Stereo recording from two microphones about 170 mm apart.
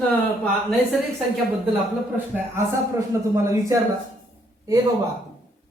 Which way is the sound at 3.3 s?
20° right (ahead or behind).